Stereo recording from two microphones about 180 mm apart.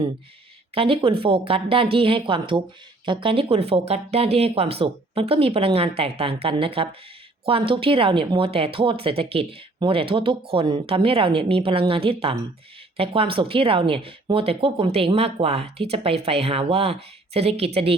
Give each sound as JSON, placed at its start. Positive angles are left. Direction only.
{"t": 0.7, "sound": "speech", "side_deg": -30}